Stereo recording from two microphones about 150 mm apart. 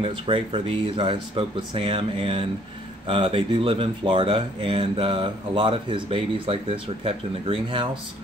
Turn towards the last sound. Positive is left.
turn(degrees=-35)  # may be behind; listen again after turning